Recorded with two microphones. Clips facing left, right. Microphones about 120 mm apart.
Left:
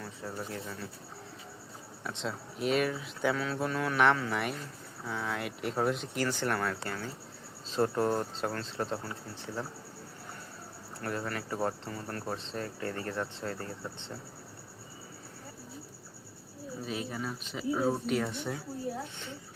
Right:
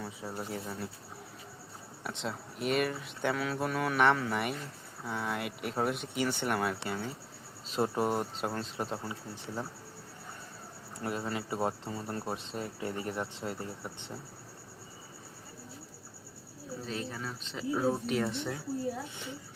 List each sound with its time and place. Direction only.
0.0 s speech: 10° right (ahead or behind)
2.0 s speech: 5° right (ahead or behind)
11.0 s speech: 20° right (ahead or behind)
16.8 s speech: 10° left (ahead or behind)